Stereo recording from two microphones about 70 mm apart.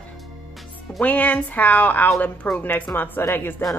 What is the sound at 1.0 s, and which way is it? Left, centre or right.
Speech, left.